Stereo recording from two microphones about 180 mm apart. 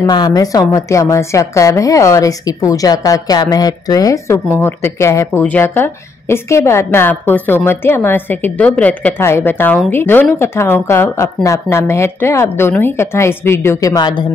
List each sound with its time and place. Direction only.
0.0 s a woman's voice: 25° left (ahead or behind)